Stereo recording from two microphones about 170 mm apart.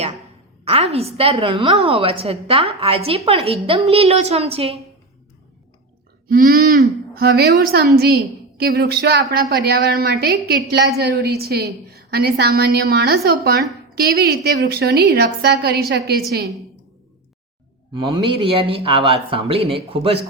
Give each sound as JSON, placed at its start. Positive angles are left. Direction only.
{"t": 0.6, "sound": "a woman's voice", "side_deg": -35}
{"t": 6.2, "sound": "a woman's voice", "side_deg": -55}
{"t": 17.9, "sound": "a woman's voice", "side_deg": -30}